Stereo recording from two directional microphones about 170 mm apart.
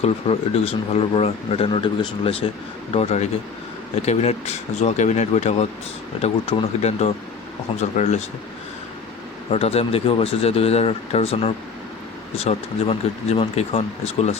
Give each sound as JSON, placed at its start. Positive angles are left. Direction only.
{"t": 0.0, "sound": "speech", "side_deg": 35}
{"t": 9.5, "sound": "speech", "side_deg": 35}